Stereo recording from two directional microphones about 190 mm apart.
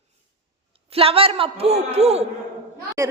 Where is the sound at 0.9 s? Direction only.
30° right (ahead or behind).